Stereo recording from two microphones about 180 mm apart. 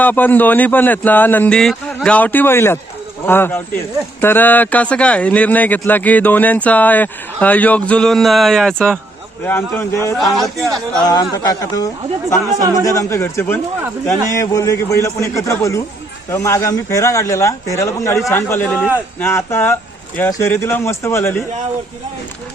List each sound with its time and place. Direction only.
0.0 s speech: 10° left (ahead or behind)
10.3 s speech: centre (ahead or behind)
11.0 s a man's voice: 20° left (ahead or behind)